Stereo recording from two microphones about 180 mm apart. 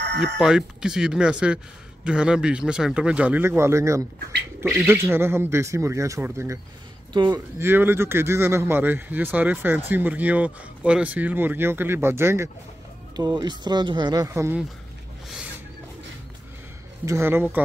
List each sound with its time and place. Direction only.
0.4 s a man's voice: 5° right (ahead or behind)
17.0 s a man's voice: 15° right (ahead or behind)